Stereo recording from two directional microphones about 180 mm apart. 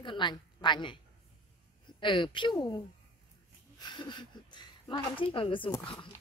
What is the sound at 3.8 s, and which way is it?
A woman's voice, 25° left (ahead or behind).